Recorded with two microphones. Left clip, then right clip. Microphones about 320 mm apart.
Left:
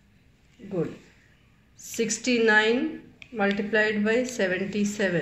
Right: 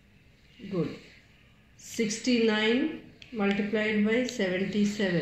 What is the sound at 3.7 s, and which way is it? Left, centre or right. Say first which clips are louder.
Speech: left 5 dB; left.